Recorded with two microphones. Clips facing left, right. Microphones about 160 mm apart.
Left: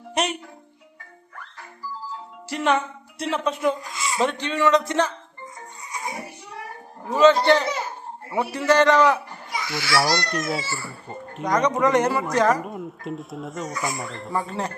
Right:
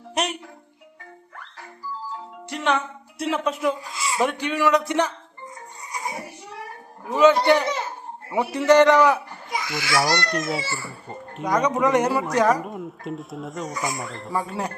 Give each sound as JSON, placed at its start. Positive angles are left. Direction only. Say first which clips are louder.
{"t": 0.1, "sound": "music", "louder": "left 1 dB", "side_deg": 0}
{"t": 2.5, "sound": "a woman's voice", "louder": "left 2 dB", "side_deg": 0}
{"t": 7.1, "sound": "a man's voice", "louder": "even", "side_deg": -10}
{"t": 10.2, "sound": "a woman's voice", "louder": "right 1 dB", "side_deg": 0}
{"t": 12.6, "sound": "a woman's voice", "louder": "even", "side_deg": 0}